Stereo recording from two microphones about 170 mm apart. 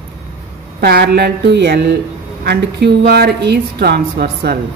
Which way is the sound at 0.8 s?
75° right (ahead or behind).